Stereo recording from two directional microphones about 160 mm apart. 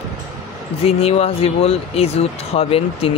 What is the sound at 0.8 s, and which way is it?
Speech, 40° left (ahead or behind).